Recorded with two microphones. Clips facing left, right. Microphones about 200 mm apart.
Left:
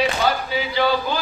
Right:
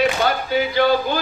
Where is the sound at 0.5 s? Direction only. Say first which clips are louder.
Right 4 dB; 50° right (ahead or behind).